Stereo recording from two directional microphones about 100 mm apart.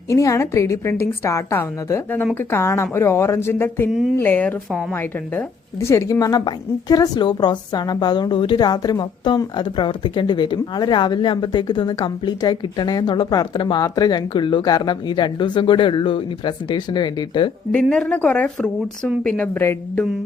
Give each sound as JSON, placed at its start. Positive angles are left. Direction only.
{"t": 0.1, "sound": "a woman's voice", "side_deg": 35}
{"t": 17.7, "sound": "speech", "side_deg": 10}